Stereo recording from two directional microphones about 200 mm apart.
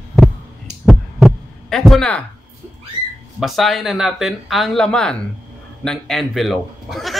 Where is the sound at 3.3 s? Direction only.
Centre (ahead or behind).